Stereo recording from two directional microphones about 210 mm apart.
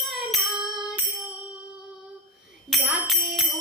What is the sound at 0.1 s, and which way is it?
Music, centre (ahead or behind).